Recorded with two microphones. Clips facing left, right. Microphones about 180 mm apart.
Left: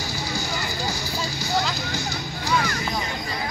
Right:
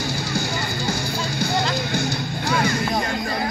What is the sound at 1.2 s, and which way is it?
Music, 55° right (ahead or behind).